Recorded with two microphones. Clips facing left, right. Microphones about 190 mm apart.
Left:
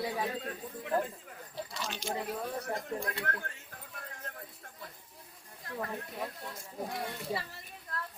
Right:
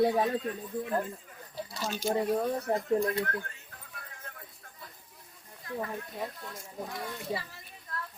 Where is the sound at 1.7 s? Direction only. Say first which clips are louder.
Right 8 dB; 35° right (ahead or behind).